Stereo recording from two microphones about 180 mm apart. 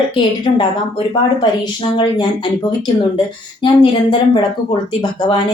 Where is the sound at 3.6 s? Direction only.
25° left (ahead or behind).